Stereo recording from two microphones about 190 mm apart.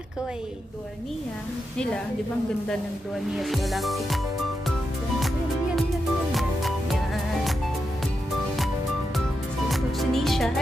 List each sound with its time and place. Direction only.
3.3 s music: centre (ahead or behind)
6.3 s music: centre (ahead or behind)
9.7 s music: centre (ahead or behind)